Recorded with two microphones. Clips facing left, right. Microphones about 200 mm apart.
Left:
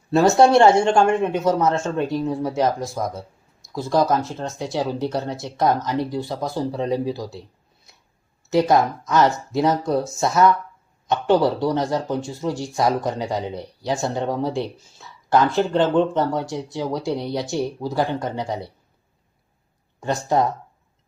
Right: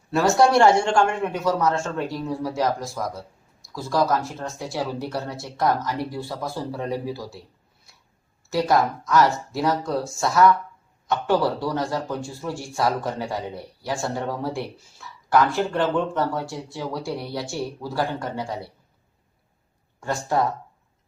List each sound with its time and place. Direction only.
0.1 s a man's voice: 25° left (ahead or behind)
8.4 s a man's voice: 20° left (ahead or behind)
20.0 s a man's voice: 20° left (ahead or behind)